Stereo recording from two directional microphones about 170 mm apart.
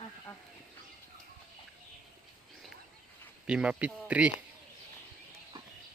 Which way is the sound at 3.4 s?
5° right (ahead or behind).